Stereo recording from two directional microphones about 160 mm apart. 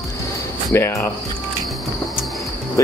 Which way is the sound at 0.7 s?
15° left (ahead or behind).